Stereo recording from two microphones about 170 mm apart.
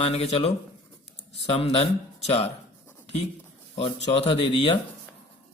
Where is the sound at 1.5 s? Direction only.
35° left (ahead or behind).